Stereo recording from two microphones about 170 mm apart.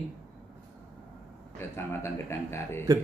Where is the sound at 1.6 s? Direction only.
15° left (ahead or behind).